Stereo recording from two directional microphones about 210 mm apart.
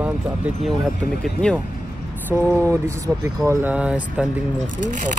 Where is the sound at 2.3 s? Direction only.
10° right (ahead or behind).